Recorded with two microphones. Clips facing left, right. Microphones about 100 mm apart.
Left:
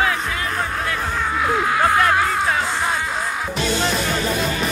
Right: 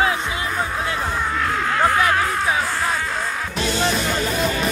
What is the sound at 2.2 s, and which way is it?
Music, centre (ahead or behind).